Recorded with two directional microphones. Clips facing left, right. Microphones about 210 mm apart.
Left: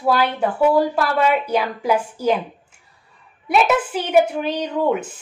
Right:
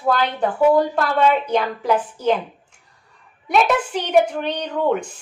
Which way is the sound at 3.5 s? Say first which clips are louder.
Left 1 dB; 5° left (ahead or behind).